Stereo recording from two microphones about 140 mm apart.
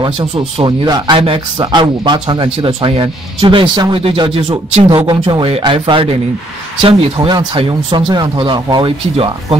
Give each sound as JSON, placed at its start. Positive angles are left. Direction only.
{"t": 0.0, "sound": "speech", "side_deg": -35}
{"t": 9.1, "sound": "speech", "side_deg": -45}